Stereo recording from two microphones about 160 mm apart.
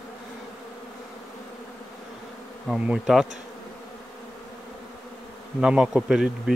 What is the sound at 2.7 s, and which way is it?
Speech, centre (ahead or behind).